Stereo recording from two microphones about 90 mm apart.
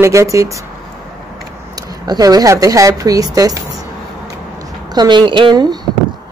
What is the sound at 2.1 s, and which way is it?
Speech, 45° right (ahead or behind).